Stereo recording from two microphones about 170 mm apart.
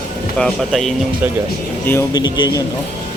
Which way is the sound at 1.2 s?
10° right (ahead or behind).